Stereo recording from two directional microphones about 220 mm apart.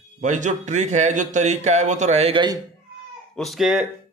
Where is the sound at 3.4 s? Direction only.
Centre (ahead or behind).